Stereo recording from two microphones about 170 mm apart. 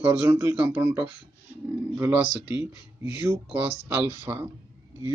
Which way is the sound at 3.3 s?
15° right (ahead or behind).